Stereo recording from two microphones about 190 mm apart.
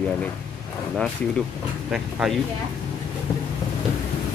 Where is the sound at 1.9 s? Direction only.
Centre (ahead or behind).